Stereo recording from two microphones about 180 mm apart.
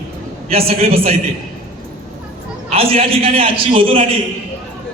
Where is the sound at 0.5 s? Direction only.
35° right (ahead or behind).